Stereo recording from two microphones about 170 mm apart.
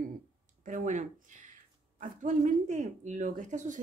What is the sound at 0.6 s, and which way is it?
Speech, 45° right (ahead or behind).